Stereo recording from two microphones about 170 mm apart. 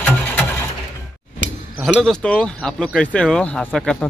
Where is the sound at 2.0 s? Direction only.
5° left (ahead or behind).